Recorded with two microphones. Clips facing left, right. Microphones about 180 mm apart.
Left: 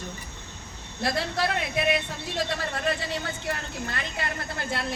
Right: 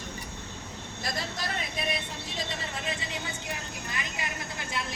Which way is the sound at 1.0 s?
65° left (ahead or behind).